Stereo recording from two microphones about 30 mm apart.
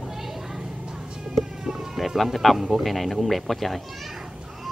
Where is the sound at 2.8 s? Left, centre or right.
Centre.